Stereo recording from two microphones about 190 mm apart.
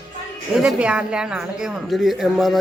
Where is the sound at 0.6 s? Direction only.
5° right (ahead or behind).